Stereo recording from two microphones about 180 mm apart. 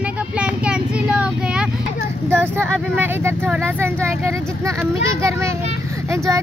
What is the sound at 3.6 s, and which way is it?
Speech, 10° right (ahead or behind).